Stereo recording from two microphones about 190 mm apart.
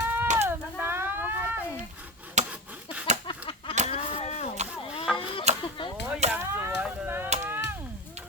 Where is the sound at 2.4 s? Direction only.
40° right (ahead or behind).